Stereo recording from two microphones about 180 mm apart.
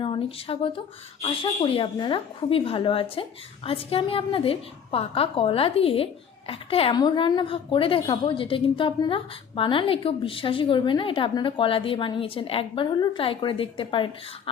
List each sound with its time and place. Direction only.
0.0 s a woman's voice: 30° left (ahead or behind)